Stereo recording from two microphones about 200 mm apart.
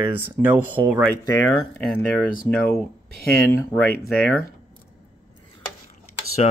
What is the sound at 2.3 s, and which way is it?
Speech, 45° left (ahead or behind).